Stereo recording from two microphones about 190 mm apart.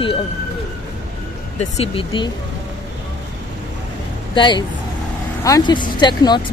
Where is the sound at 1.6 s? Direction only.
30° left (ahead or behind).